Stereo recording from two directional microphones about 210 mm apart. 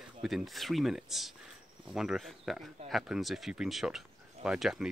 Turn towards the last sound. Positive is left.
turn(degrees=0)  # may be behind; listen again after turning